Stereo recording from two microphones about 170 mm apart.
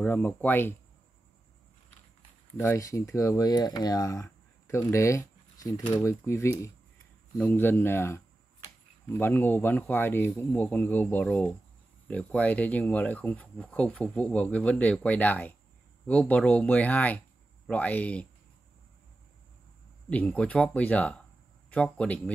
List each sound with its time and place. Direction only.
0.0 s speech: 10° left (ahead or behind)
2.5 s speech: 15° left (ahead or behind)
20.1 s speech: 5° left (ahead or behind)